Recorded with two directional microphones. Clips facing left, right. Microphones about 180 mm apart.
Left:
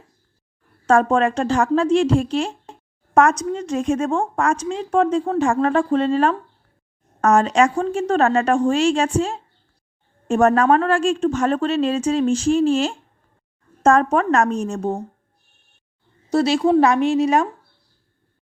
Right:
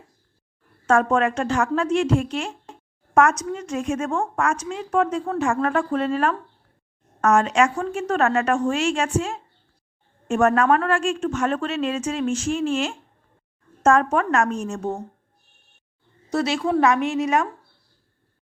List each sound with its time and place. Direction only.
0.9 s a woman's voice: 30° left (ahead or behind)
16.3 s a woman's voice: 30° left (ahead or behind)